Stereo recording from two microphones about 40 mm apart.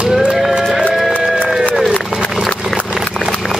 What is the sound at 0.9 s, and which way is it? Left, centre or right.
Music, centre.